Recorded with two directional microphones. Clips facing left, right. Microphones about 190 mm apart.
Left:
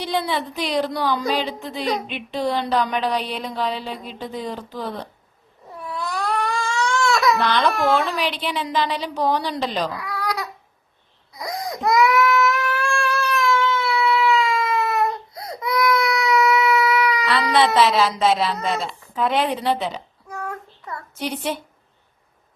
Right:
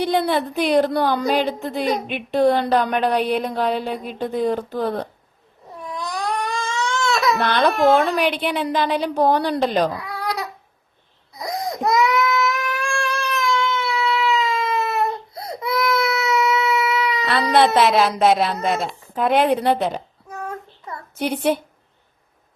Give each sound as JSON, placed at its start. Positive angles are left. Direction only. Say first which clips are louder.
{"t": 0.0, "sound": "a sound", "louder": "right 5 dB", "side_deg": -55}
{"t": 5.9, "sound": "baby cry", "louder": "even", "side_deg": -15}
{"t": 7.3, "sound": "a woman's voice", "louder": "right 1 dB", "side_deg": -55}
{"t": 7.7, "sound": "speech", "louder": "right 4 dB", "side_deg": -20}
{"t": 7.9, "sound": "a woman's voice", "louder": "right 4 dB", "side_deg": -55}
{"t": 9.9, "sound": "baby cry", "louder": "even", "side_deg": -25}
{"t": 11.3, "sound": "babbling", "louder": "right 2 dB", "side_deg": -25}
{"t": 11.8, "sound": "baby cry", "louder": "left 2 dB", "side_deg": -20}
{"t": 17.7, "sound": "a sound", "louder": "right 2 dB", "side_deg": -55}
{"t": 20.3, "sound": "child singing", "louder": "right 1 dB", "side_deg": -20}